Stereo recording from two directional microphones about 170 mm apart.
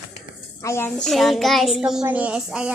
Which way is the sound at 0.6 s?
15° left (ahead or behind).